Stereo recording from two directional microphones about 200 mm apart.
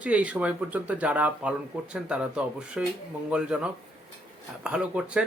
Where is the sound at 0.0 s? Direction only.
5° right (ahead or behind).